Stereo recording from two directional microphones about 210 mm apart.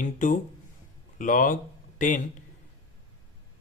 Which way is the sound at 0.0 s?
40° left (ahead or behind).